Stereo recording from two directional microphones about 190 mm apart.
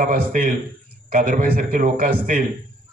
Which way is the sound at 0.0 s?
50° right (ahead or behind).